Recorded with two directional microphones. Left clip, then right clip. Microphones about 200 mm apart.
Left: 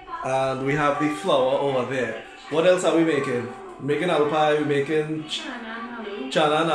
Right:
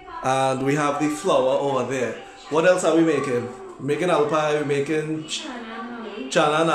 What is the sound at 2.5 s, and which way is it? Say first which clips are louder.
Speech: right 1 dB; 20° right (ahead or behind).